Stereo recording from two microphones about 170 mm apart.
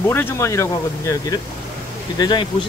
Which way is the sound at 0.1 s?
15° left (ahead or behind).